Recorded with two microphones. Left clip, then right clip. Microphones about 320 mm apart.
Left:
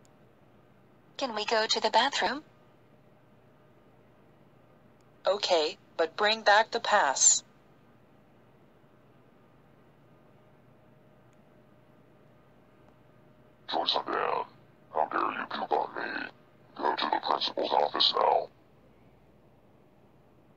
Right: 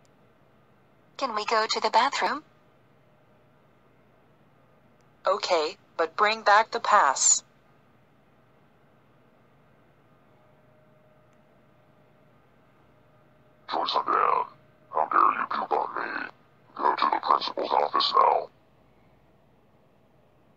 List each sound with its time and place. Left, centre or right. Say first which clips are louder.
1.1 s a woman's voice: right 3 dB; centre
5.2 s a woman's voice: right 2 dB; centre
13.7 s a sound: right 4 dB; centre